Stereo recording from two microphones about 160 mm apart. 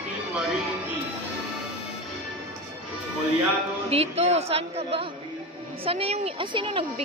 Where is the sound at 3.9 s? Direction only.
40° right (ahead or behind).